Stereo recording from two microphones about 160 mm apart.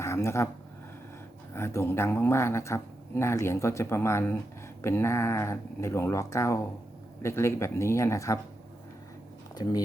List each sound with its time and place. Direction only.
0.0 s a sound: 15° left (ahead or behind)
1.5 s speech: 15° left (ahead or behind)
9.6 s speech: 25° left (ahead or behind)